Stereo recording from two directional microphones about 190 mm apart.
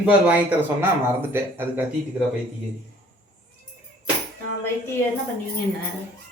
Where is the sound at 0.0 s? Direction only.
5° right (ahead or behind).